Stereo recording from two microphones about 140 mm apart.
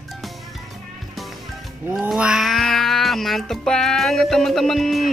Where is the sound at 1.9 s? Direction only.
10° right (ahead or behind).